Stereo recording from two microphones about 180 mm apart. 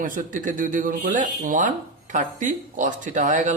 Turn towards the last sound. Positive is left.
turn(degrees=-45)  # may be behind; listen again after turning